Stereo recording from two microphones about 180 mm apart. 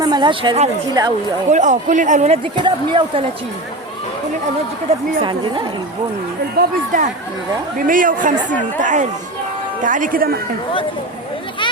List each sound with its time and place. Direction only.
0.0 s a woman's voice: 25° right (ahead or behind)
0.9 s speech: 20° right (ahead or behind)
1.5 s a man's voice: 40° right (ahead or behind)
2.6 s speech: 25° right (ahead or behind)
5.2 s speech: 25° right (ahead or behind)
6.6 s a man's voice: 45° right (ahead or behind)